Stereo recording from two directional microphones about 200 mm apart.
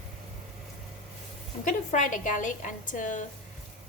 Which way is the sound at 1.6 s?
40° left (ahead or behind).